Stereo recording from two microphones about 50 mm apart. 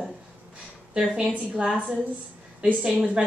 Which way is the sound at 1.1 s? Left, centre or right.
Right.